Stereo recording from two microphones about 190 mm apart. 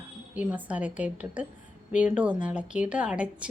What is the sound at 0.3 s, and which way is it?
Speech, 5° right (ahead or behind).